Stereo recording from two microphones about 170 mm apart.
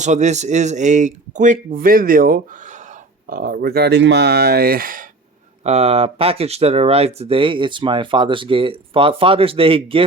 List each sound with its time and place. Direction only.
0.0 s speech: 45° right (ahead or behind)
5.6 s speech: 35° right (ahead or behind)